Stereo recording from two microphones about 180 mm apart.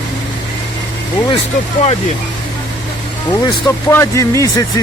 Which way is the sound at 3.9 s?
15° left (ahead or behind).